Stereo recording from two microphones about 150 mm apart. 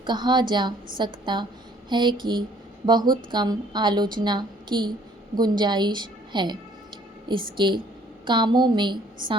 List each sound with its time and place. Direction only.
0.0 s a woman's voice: 30° right (ahead or behind)